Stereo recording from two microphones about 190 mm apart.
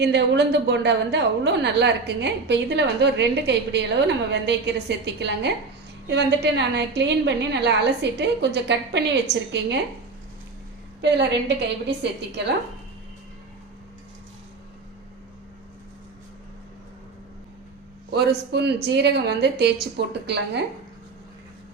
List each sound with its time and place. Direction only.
0.0 s a woman's voice: 60° right (ahead or behind)
11.0 s a woman's voice: 65° right (ahead or behind)
18.5 s a woman's voice: 60° right (ahead or behind)